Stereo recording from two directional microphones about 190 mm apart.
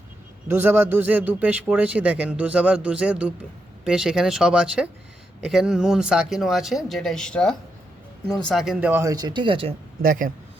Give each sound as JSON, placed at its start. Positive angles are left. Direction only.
{"t": 0.4, "sound": "a man's voice", "side_deg": -10}
{"t": 10.0, "sound": "speech", "side_deg": -45}